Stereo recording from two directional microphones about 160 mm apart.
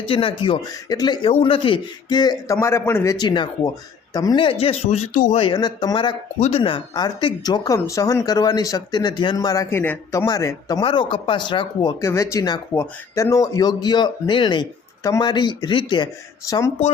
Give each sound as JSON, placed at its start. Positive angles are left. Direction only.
{"t": 0.1, "sound": "speech", "side_deg": 35}